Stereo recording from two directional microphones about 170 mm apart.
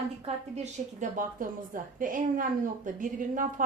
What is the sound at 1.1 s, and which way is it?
A woman's voice, 50° right (ahead or behind).